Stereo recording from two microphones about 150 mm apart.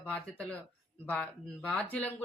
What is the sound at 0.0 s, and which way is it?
Speech, 10° left (ahead or behind).